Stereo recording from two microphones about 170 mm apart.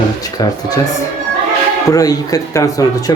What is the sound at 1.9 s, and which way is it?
Speech, 20° left (ahead or behind).